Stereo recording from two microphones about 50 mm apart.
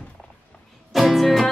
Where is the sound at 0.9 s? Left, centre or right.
Centre.